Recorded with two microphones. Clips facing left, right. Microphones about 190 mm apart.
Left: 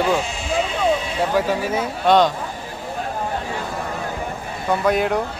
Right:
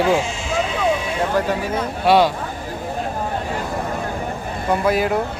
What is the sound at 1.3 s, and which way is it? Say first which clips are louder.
Speech: left 2 dB; 5° left (ahead or behind).